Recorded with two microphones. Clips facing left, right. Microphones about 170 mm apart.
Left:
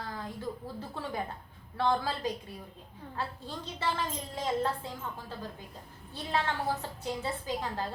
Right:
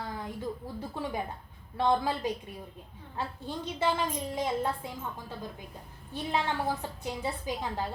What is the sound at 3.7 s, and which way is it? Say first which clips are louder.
Speech: right 4 dB; 15° right (ahead or behind).